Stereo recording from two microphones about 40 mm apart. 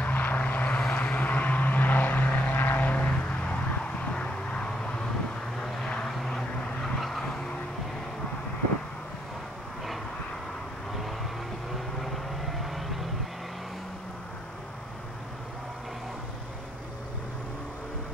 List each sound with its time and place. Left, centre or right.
0.0 s vehicle: left
2.8 s vehicle: left
4.1 s a sound: left
5.7 s vehicle: centre
12.0 s vehicle: centre